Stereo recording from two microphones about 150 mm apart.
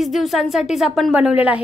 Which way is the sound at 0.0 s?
Centre (ahead or behind).